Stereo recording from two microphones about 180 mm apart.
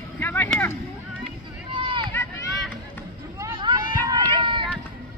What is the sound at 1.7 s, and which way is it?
Run, 30° right (ahead or behind).